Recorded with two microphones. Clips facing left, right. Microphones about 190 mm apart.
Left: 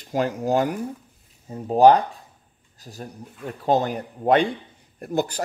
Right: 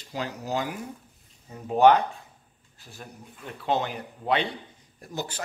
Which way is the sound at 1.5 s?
35° left (ahead or behind).